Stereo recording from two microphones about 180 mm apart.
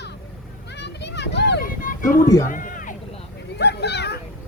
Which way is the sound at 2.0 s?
20° left (ahead or behind).